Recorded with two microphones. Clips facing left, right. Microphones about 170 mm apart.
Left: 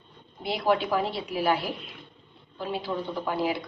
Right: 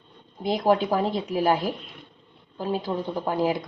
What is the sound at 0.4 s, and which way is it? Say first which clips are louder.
A woman's voice: right 4 dB; 45° right (ahead or behind).